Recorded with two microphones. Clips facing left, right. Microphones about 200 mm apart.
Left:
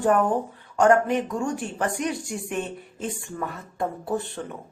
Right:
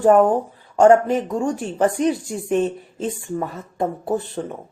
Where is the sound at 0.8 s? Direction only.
30° right (ahead or behind).